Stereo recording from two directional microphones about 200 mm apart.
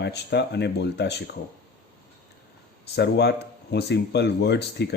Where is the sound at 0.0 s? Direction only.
55° left (ahead or behind).